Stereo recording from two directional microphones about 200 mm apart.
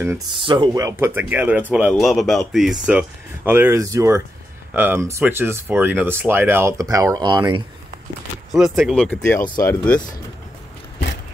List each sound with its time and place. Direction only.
0.4 s speech: 25° right (ahead or behind)
8.5 s speech: centre (ahead or behind)
9.6 s speech: 15° left (ahead or behind)